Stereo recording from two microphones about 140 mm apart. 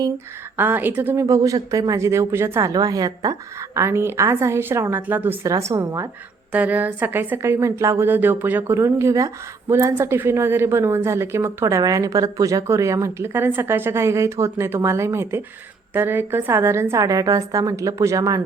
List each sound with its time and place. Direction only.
0.5 s a woman's voice: 15° right (ahead or behind)